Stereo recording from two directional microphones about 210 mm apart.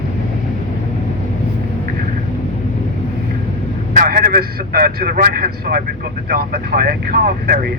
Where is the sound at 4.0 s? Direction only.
45° right (ahead or behind).